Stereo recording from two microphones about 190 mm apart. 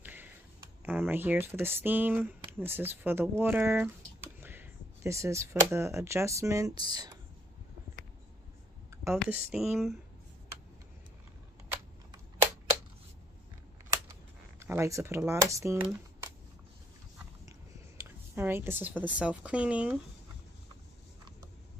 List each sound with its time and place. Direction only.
0.0 s a sound: 10° right (ahead or behind)
0.8 s speech: 10° right (ahead or behind)
9.1 s speech: 5° right (ahead or behind)
11.7 s typewriter: 20° right (ahead or behind)
14.6 s speech: 15° right (ahead or behind)
17.5 s speech: 15° right (ahead or behind)